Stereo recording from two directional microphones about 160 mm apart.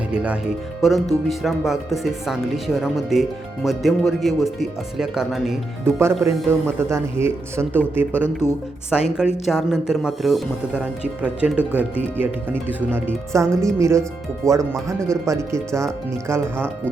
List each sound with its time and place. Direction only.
0.1 s speech: 5° right (ahead or behind)
5.8 s speech: 15° right (ahead or behind)
6.1 s speech: centre (ahead or behind)
6.7 s speech: 15° right (ahead or behind)
8.1 s speech: 15° left (ahead or behind)
8.9 s speech: 5° right (ahead or behind)